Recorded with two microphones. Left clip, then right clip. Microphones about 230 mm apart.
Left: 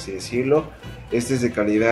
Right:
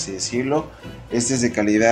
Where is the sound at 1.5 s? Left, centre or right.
Right.